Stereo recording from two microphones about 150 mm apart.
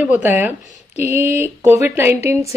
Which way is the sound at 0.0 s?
10° right (ahead or behind).